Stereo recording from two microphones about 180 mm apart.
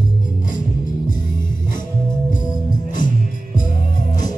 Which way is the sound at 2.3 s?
45° left (ahead or behind).